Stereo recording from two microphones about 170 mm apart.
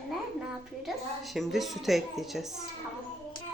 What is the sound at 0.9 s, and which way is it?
Speech, centre (ahead or behind).